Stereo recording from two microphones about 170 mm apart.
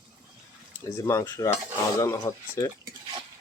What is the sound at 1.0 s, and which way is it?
Speech, 20° left (ahead or behind).